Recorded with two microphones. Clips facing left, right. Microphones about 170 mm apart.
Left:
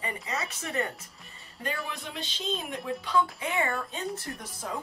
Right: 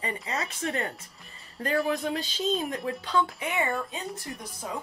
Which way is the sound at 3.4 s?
20° right (ahead or behind).